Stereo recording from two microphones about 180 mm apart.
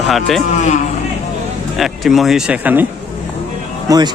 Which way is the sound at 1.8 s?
Centre (ahead or behind).